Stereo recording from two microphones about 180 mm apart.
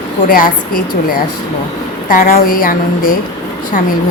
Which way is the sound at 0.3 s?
50° left (ahead or behind).